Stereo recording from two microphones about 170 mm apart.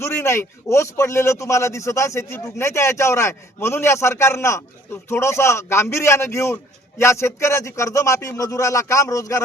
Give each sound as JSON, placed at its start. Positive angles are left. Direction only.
{"t": 0.0, "sound": "a man's voice", "side_deg": 15}